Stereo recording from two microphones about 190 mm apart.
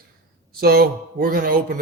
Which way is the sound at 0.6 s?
55° right (ahead or behind).